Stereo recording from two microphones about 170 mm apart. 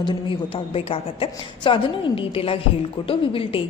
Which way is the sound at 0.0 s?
30° left (ahead or behind).